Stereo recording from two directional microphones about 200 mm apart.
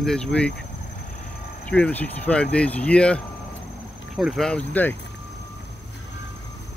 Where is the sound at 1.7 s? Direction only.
5° left (ahead or behind).